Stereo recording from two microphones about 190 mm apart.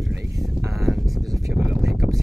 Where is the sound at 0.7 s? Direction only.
Centre (ahead or behind).